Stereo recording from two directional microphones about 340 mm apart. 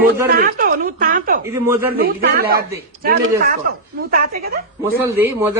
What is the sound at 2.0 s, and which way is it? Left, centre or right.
Speech, right.